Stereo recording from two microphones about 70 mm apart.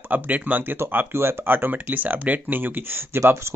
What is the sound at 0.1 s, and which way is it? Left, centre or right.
Speech, right.